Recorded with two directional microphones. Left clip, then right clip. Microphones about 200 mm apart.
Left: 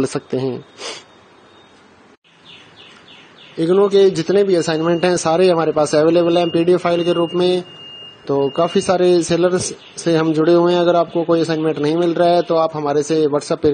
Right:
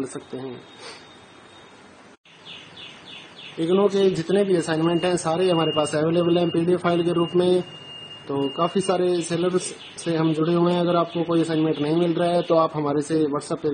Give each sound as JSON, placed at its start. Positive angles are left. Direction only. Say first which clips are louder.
{"t": 0.2, "sound": "speech", "louder": "left 11 dB", "side_deg": 55}
{"t": 3.6, "sound": "a man's voice", "louder": "left 7 dB", "side_deg": 35}